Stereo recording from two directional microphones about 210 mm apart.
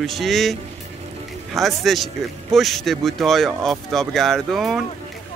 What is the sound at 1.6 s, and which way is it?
Speech, centre (ahead or behind).